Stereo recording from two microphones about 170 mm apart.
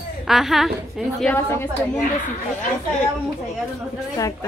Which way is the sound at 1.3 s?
15° left (ahead or behind).